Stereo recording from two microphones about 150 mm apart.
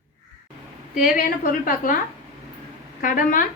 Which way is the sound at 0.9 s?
70° left (ahead or behind).